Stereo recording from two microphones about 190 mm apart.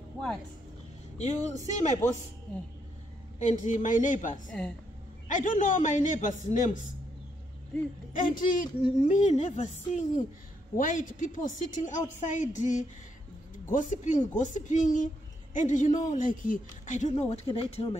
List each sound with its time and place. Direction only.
1.1 s speech: 35° left (ahead or behind)
3.3 s speech: 40° left (ahead or behind)
4.5 s a woman's voice: 5° left (ahead or behind)
5.3 s speech: 45° left (ahead or behind)
8.1 s speech: 45° left (ahead or behind)